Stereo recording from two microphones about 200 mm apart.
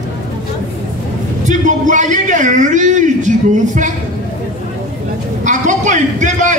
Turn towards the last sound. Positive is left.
turn(degrees=-40)  # may be behind; listen again after turning